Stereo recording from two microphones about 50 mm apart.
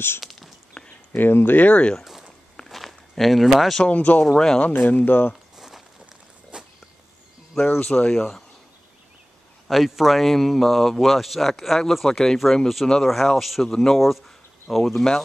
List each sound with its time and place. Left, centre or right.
0.2 s whispering: centre
0.8 s a sound: centre
1.1 s speech: left
2.0 s a sound: centre
2.5 s walk: centre
3.8 s speech: left
4.3 s speech: centre
4.6 s speech: left
6.5 s walk: centre
7.5 s speech: left
7.8 s speech: centre
8.2 s speech: centre
9.7 s speech: centre